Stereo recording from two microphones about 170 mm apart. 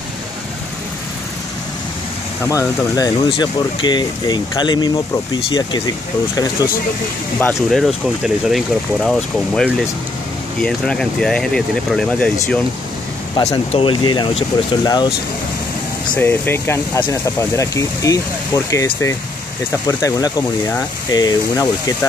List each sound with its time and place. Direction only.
2.4 s speech: 20° left (ahead or behind)
7.3 s speech: 10° left (ahead or behind)
8.2 s speech: centre (ahead or behind)
13.4 s speech: 40° left (ahead or behind)
16.2 s speech: 10° left (ahead or behind)
19.9 s speech: 20° left (ahead or behind)